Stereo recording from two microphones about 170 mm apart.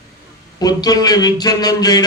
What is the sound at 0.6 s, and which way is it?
Speech, 25° left (ahead or behind).